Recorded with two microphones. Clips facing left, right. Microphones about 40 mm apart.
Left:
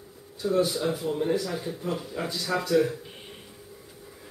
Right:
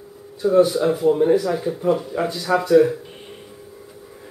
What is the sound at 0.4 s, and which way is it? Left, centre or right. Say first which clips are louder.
Speech: right 9 dB; centre.